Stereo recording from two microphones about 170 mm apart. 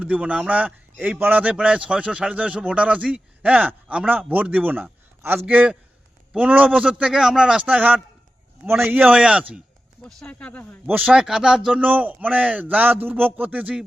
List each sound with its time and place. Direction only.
0.0 s a man's voice: 10° right (ahead or behind)
10.2 s speech: 5° left (ahead or behind)
10.8 s a man's voice: 5° right (ahead or behind)